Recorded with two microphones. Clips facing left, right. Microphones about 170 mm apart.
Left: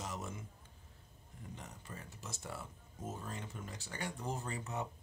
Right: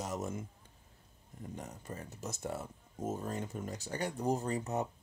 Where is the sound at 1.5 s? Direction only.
45° right (ahead or behind).